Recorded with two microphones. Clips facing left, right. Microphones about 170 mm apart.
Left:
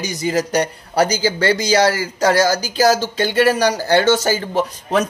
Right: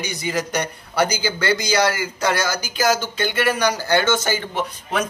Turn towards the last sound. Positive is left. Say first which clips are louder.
# left 6 dB
turn(degrees=40)  # may be behind; listen again after turning